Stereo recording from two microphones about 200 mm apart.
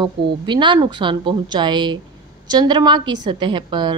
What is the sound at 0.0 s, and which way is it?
A woman's voice, 25° right (ahead or behind).